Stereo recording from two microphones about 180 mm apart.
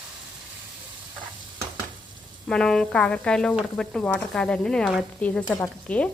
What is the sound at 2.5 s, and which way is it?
Speech, 5° left (ahead or behind).